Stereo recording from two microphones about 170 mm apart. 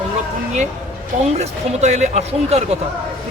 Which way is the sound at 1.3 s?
40° right (ahead or behind).